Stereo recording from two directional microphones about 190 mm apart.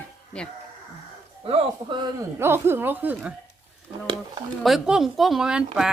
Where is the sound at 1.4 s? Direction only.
30° right (ahead or behind); by 3.3 s 10° right (ahead or behind).